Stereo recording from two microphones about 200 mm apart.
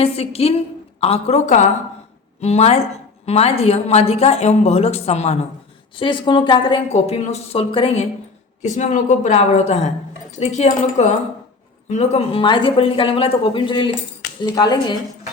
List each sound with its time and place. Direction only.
0.0 s a woman's voice: 30° left (ahead or behind)